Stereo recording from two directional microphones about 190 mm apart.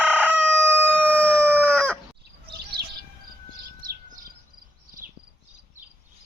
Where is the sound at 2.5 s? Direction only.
60° right (ahead or behind).